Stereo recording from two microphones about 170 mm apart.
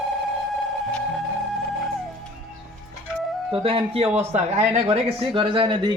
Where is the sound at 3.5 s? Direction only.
30° right (ahead or behind).